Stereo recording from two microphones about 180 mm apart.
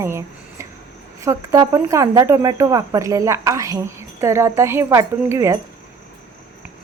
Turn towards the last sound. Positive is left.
turn(degrees=-15)  # may be behind; listen again after turning